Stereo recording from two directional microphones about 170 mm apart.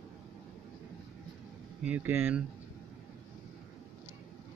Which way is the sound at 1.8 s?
10° right (ahead or behind).